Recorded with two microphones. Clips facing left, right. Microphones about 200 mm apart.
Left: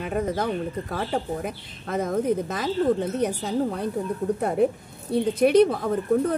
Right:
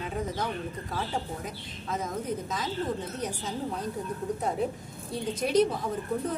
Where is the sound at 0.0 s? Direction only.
60° left (ahead or behind).